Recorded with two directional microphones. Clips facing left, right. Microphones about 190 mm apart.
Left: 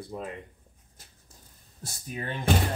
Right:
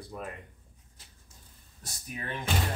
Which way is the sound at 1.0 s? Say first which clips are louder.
Left 3 dB; 45° left (ahead or behind).